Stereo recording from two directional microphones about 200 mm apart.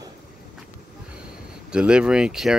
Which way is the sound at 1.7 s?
5° right (ahead or behind).